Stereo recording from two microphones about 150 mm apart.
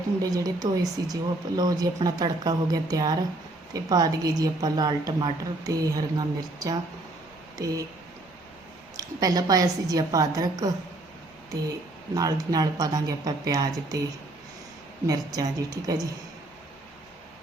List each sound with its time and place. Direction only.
0.2 s a woman's voice: 25° right (ahead or behind)
9.0 s a woman's voice: 25° right (ahead or behind)
12.1 s a woman's voice: 25° right (ahead or behind)
15.0 s a woman's voice: 25° right (ahead or behind)